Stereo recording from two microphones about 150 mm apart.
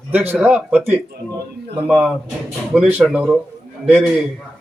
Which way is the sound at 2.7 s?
5° right (ahead or behind).